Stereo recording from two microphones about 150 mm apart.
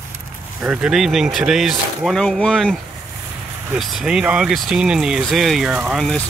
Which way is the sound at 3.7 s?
5° right (ahead or behind).